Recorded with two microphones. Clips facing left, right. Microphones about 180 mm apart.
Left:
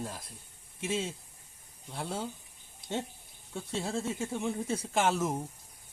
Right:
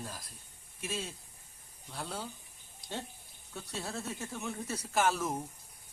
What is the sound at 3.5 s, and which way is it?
Speech, 25° left (ahead or behind).